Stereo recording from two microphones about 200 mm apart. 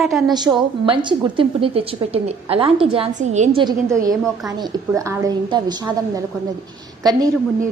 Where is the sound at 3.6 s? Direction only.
15° right (ahead or behind).